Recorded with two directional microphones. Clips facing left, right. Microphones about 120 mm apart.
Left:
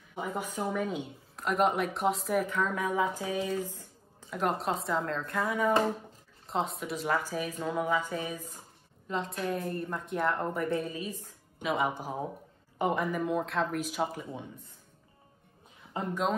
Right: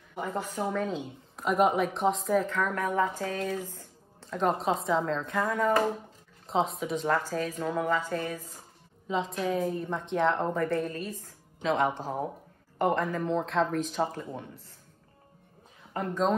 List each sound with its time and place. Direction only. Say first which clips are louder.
0.1 s speech: right 2 dB; 10° left (ahead or behind)
1.3 s a woman's voice: right 3 dB; centre (ahead or behind)
2.4 s speech: right 1 dB; 15° left (ahead or behind)
3.6 s a sound: left 1 dB; 15° left (ahead or behind)
4.4 s a woman's voice: right 3 dB; centre (ahead or behind)
5.5 s speech: right 1 dB; 15° left (ahead or behind)
6.4 s speech: right 4 dB; centre (ahead or behind)
9.0 s a woman's voice: right 3 dB; centre (ahead or behind)
15.9 s speech: right 3 dB; 15° left (ahead or behind)